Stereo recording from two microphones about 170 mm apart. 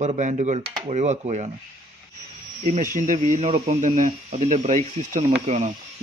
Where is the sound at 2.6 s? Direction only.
45° right (ahead or behind).